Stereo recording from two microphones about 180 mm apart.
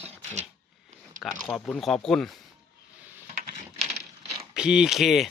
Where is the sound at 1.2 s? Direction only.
Centre (ahead or behind).